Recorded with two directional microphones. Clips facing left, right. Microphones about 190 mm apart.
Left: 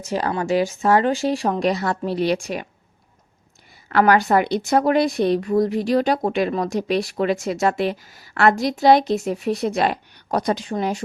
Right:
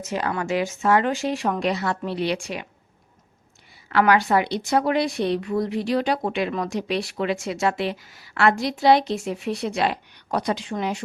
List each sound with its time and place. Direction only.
0.0 s speech: 35° left (ahead or behind)
3.8 s speech: 45° left (ahead or behind)